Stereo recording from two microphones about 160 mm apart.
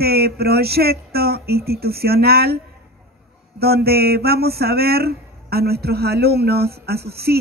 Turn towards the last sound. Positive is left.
turn(degrees=-80)